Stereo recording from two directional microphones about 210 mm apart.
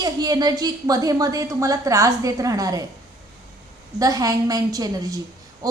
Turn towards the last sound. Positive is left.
turn(degrees=-15)  # may be behind; listen again after turning